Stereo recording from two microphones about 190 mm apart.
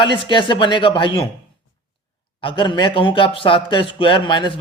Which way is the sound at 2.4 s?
25° left (ahead or behind).